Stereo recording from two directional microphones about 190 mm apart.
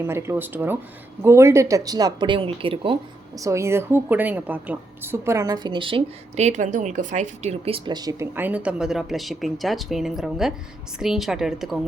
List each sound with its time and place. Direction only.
0.0 s a woman's voice: 15° right (ahead or behind)
3.4 s a woman's voice: 15° right (ahead or behind)